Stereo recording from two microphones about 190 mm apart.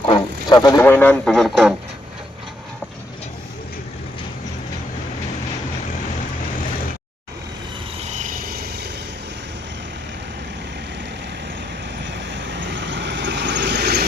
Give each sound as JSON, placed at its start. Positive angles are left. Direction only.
{"t": 0.0, "sound": "speech", "side_deg": 25}
{"t": 8.0, "sound": "vehicle", "side_deg": -40}
{"t": 12.0, "sound": "vehicle", "side_deg": -70}